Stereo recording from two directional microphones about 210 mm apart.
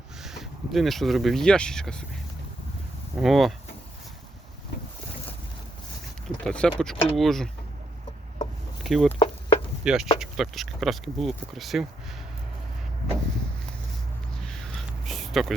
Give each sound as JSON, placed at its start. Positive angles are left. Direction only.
{"t": 0.2, "sound": "speech", "side_deg": 0}
{"t": 3.2, "sound": "speech", "side_deg": 0}
{"t": 6.2, "sound": "speech", "side_deg": 5}
{"t": 8.8, "sound": "speech", "side_deg": 0}
{"t": 9.1, "sound": "chop", "side_deg": 25}
{"t": 9.8, "sound": "speech", "side_deg": -5}
{"t": 14.4, "sound": "a sound", "side_deg": 5}